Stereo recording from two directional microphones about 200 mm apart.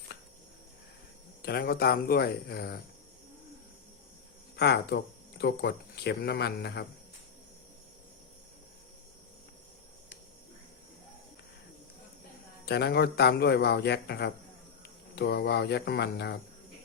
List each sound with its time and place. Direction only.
1.4 s speech: 50° left (ahead or behind)
4.5 s speech: 55° left (ahead or behind)
12.6 s a man's voice: 55° left (ahead or behind)